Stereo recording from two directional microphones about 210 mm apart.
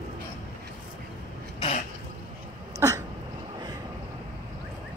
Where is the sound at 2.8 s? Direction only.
10° right (ahead or behind).